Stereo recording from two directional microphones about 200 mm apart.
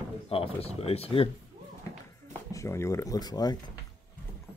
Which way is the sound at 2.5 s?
15° left (ahead or behind).